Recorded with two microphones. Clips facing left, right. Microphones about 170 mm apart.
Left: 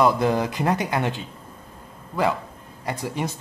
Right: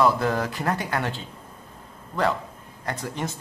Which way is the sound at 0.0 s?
15° left (ahead or behind).